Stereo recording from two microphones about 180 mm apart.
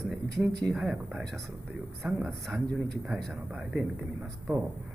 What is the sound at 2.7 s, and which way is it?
Speech, 5° left (ahead or behind).